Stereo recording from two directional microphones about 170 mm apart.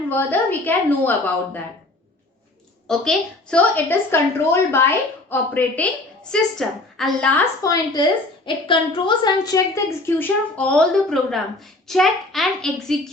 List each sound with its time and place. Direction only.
0.1 s a woman's voice: 10° left (ahead or behind)
2.8 s a woman's voice: 5° left (ahead or behind)
7.6 s a woman's voice: 20° left (ahead or behind); by 13.0 s centre (ahead or behind)